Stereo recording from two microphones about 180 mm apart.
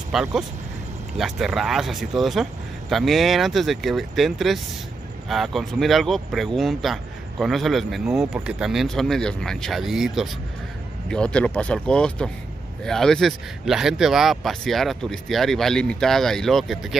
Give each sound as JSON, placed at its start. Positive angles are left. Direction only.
{"t": 0.1, "sound": "speech", "side_deg": -5}